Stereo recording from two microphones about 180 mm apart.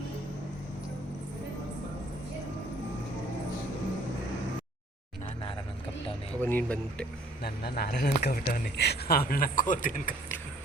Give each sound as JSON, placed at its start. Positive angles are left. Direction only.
{"t": 6.4, "sound": "speech", "side_deg": 10}
{"t": 7.4, "sound": "speech", "side_deg": 60}